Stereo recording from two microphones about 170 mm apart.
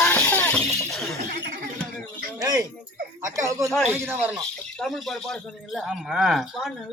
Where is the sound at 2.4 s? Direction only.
25° right (ahead or behind).